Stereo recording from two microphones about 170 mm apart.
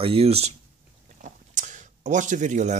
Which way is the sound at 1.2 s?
45° right (ahead or behind).